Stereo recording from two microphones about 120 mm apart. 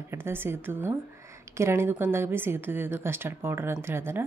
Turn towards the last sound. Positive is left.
turn(degrees=-20)  # may be behind; listen again after turning